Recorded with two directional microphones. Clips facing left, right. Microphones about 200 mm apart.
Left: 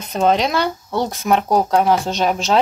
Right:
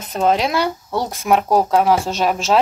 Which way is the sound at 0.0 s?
5° right (ahead or behind).